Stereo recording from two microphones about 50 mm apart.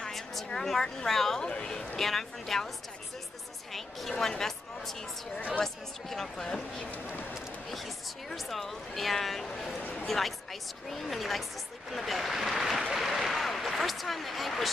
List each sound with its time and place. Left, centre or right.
0.1 s a sound: centre
0.5 s speech: centre
1.4 s speech: centre
3.7 s speech: centre
8.3 s speech: centre
9.8 s a man's voice: left
10.0 s speech: centre